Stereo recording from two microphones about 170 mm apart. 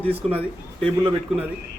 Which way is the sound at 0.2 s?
35° right (ahead or behind).